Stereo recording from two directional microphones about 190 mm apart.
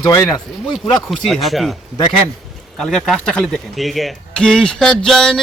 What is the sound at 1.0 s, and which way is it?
Speech, centre (ahead or behind).